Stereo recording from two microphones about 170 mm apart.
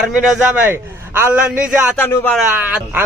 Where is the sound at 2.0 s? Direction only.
15° left (ahead or behind).